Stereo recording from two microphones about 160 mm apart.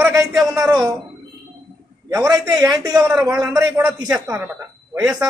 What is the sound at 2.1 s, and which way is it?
Speech, 20° right (ahead or behind).